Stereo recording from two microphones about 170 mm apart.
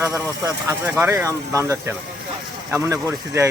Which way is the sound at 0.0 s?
15° right (ahead or behind).